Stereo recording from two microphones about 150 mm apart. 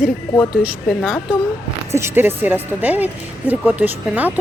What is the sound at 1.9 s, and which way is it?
A woman's voice, 15° right (ahead or behind).